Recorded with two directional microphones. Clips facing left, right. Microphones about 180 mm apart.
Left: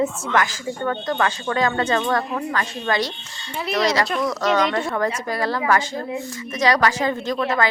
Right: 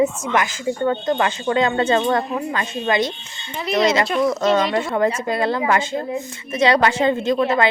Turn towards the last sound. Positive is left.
turn(degrees=-25)  # may be behind; listen again after turning